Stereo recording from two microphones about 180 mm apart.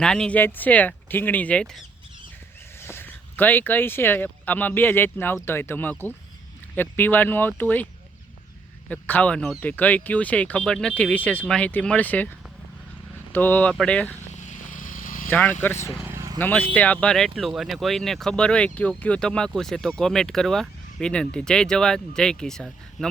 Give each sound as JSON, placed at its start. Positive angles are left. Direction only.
{"t": 0.0, "sound": "speech", "side_deg": 5}
{"t": 8.9, "sound": "speech", "side_deg": 10}
{"t": 13.3, "sound": "speech", "side_deg": 10}
{"t": 14.3, "sound": "vehicle", "side_deg": 40}
{"t": 15.3, "sound": "speech", "side_deg": 10}
{"t": 16.0, "sound": "vehicle", "side_deg": -15}
{"t": 16.4, "sound": "speech", "side_deg": 10}